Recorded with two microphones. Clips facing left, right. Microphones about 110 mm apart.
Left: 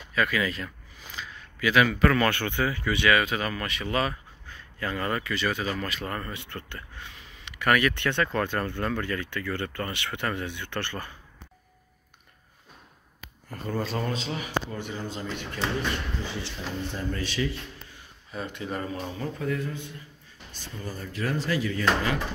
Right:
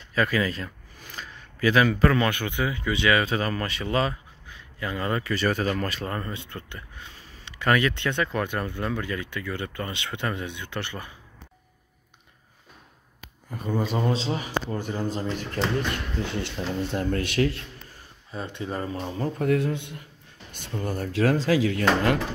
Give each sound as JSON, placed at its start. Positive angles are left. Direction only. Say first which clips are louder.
{"t": 0.1, "sound": "speech", "louder": "right 2 dB", "side_deg": -30}
{"t": 0.9, "sound": "a sound", "louder": "even", "side_deg": -50}
{"t": 1.6, "sound": "speech", "louder": "right 2 dB", "side_deg": -35}
{"t": 2.1, "sound": "speech", "louder": "even", "side_deg": -15}
{"t": 4.5, "sound": "a sound", "louder": "even", "side_deg": -15}
{"t": 5.3, "sound": "speech", "louder": "right 4 dB", "side_deg": -40}
{"t": 13.5, "sound": "speech", "louder": "right 3 dB", "side_deg": -10}
{"t": 14.0, "sound": "speech", "louder": "right 5 dB", "side_deg": -30}
{"t": 16.2, "sound": "speech", "louder": "right 5 dB", "side_deg": -60}
{"t": 18.3, "sound": "speech", "louder": "right 1 dB", "side_deg": -25}
{"t": 19.4, "sound": "speech", "louder": "right 8 dB", "side_deg": -75}